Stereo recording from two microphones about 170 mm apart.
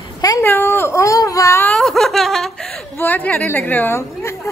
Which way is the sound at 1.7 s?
Centre (ahead or behind).